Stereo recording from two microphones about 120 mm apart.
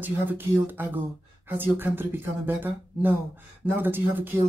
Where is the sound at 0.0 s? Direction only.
15° right (ahead or behind).